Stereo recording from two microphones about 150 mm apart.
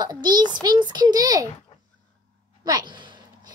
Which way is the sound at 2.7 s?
30° right (ahead or behind).